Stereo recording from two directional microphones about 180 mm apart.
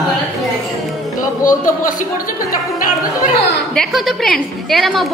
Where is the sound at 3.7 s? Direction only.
Centre (ahead or behind).